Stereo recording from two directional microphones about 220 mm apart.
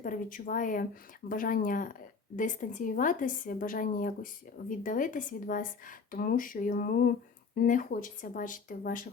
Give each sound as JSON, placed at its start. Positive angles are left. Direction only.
{"t": 0.0, "sound": "a woman's voice", "side_deg": 35}